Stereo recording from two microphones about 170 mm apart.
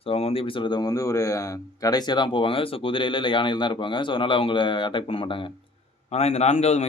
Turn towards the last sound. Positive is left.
turn(degrees=40)  # may be behind; listen again after turning